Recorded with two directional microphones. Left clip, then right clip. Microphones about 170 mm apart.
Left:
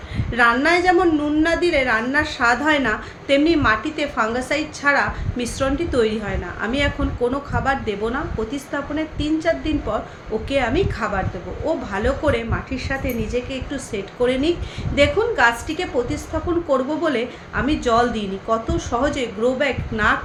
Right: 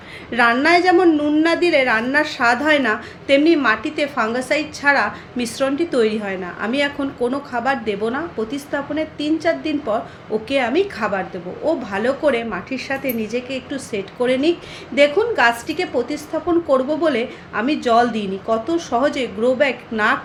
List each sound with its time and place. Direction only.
0.3 s a woman's voice: 50° right (ahead or behind)